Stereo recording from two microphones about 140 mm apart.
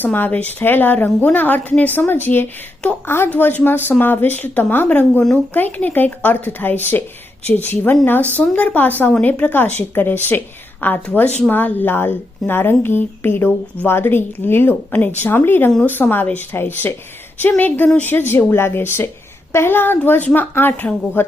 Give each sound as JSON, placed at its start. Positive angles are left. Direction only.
{"t": 0.0, "sound": "a woman's voice", "side_deg": 15}